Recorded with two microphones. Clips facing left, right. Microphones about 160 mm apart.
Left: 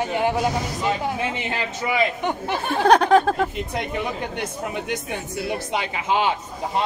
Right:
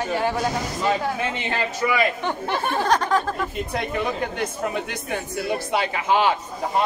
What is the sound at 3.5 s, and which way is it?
Speech, 20° left (ahead or behind).